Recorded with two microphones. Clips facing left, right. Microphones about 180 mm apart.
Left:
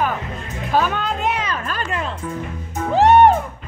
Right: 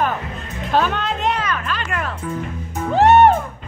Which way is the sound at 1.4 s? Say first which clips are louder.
Right 1 dB; 25° left (ahead or behind).